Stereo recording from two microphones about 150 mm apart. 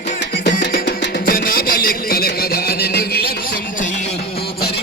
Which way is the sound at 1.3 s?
75° left (ahead or behind).